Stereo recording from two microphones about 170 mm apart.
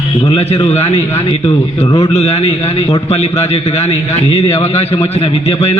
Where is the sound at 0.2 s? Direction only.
35° left (ahead or behind).